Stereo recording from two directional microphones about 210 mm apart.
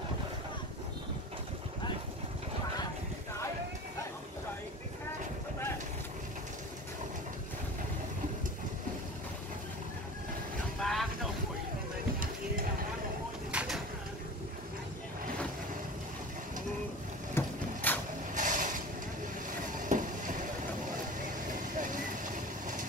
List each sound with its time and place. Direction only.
10.8 s vehicle: centre (ahead or behind)
13.5 s bird: 5° right (ahead or behind)
17.3 s vehicle: 10° left (ahead or behind)
18.3 s vehicle: 40° right (ahead or behind)
21.5 s vehicle: 40° right (ahead or behind)